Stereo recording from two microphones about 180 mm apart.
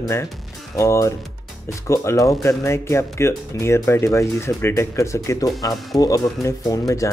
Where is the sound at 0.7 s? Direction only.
15° left (ahead or behind).